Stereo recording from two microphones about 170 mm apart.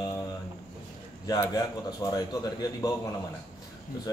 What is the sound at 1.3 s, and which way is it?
A man's voice, 20° left (ahead or behind).